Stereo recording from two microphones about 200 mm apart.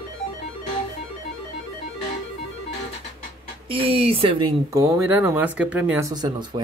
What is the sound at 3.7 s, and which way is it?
Speech, 30° right (ahead or behind).